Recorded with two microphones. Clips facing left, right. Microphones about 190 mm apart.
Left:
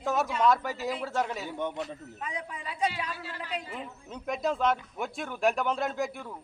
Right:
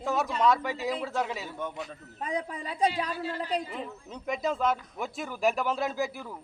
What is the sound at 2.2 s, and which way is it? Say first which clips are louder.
A woman's voice: right 7 dB; 35° right (ahead or behind).